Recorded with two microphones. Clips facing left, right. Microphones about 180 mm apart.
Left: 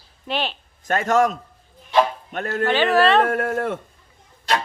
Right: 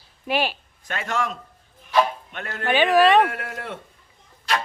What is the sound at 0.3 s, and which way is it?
Speech, 10° right (ahead or behind).